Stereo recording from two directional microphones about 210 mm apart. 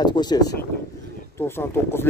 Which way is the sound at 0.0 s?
20° left (ahead or behind).